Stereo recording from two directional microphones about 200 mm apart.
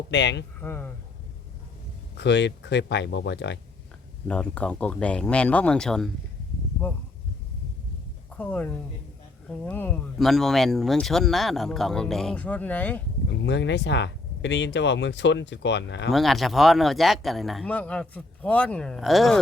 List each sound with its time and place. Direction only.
0.1 s speech: 60° left (ahead or behind)
0.6 s speech: 10° left (ahead or behind)
2.1 s speech: 60° left (ahead or behind)
4.3 s speech: 5° left (ahead or behind)
8.4 s speech: 10° left (ahead or behind)
13.4 s speech: 60° left (ahead or behind)
16.1 s speech: centre (ahead or behind)